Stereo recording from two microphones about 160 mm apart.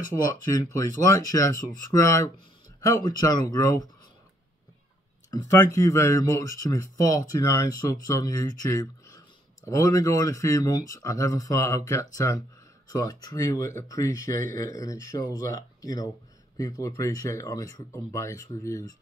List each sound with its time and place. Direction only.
0.2 s speech: 20° left (ahead or behind)
5.3 s speech: 20° left (ahead or behind)